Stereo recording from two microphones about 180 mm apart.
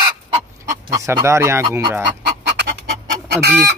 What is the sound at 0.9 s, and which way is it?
Speech, 15° right (ahead or behind).